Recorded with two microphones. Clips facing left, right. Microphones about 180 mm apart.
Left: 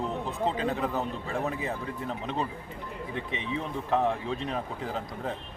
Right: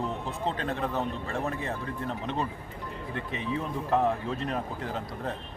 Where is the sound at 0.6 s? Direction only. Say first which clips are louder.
Left 1 dB; 5° left (ahead or behind).